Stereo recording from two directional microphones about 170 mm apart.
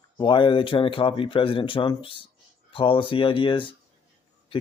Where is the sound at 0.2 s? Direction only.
30° left (ahead or behind).